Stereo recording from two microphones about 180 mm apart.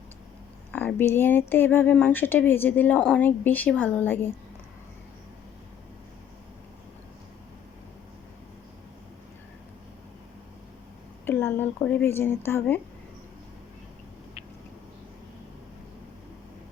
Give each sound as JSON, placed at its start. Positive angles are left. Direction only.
{"t": 0.7, "sound": "speech", "side_deg": 10}
{"t": 11.3, "sound": "speech", "side_deg": 10}